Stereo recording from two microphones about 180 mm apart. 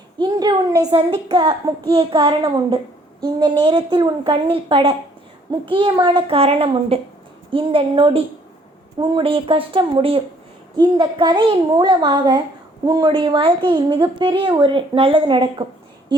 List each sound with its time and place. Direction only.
0.2 s a child's voice: 20° right (ahead or behind)